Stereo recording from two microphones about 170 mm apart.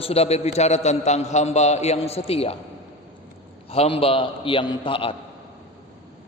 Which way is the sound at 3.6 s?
35° left (ahead or behind).